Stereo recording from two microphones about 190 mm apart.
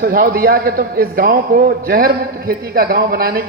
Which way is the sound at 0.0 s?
50° right (ahead or behind).